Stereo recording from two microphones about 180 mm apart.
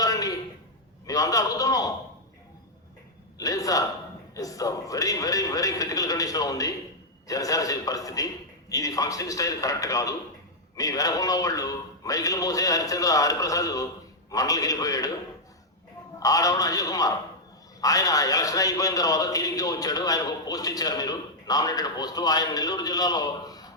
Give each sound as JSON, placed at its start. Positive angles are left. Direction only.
{"t": 0.0, "sound": "a sound", "side_deg": 20}
{"t": 1.0, "sound": "a man's voice", "side_deg": 20}
{"t": 3.3, "sound": "a man's voice", "side_deg": 20}
{"t": 16.2, "sound": "a man's voice", "side_deg": 20}